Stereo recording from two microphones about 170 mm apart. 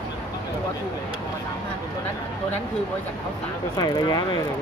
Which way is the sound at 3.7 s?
25° left (ahead or behind).